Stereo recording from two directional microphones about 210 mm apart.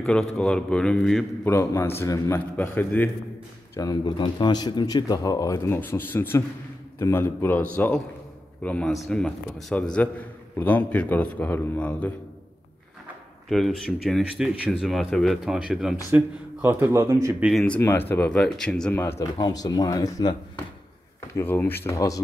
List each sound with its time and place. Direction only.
0.0 s speech: 5° left (ahead or behind)
13.5 s speech: centre (ahead or behind)
17.5 s speech: 5° left (ahead or behind)
21.4 s speech: 10° left (ahead or behind)